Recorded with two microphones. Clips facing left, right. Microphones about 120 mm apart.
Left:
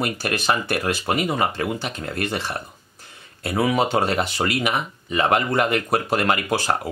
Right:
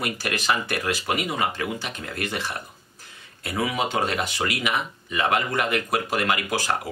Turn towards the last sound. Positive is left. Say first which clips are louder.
# left 3 dB
turn(degrees=35)  # may be behind; listen again after turning